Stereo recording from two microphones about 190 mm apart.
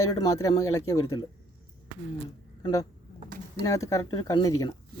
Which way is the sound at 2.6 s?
20° left (ahead or behind).